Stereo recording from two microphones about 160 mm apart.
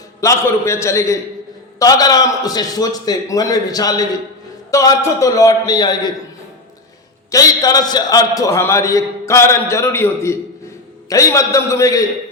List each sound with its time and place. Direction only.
0.2 s a man's voice: 20° left (ahead or behind)
7.3 s a man's voice: 20° left (ahead or behind)